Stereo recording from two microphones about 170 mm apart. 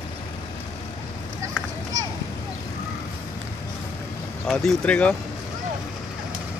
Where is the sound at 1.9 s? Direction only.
20° right (ahead or behind).